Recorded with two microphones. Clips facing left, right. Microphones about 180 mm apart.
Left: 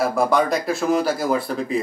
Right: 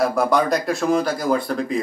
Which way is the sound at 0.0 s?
Centre (ahead or behind).